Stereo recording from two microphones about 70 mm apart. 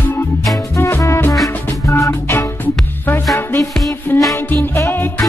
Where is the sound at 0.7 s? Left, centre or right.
Left.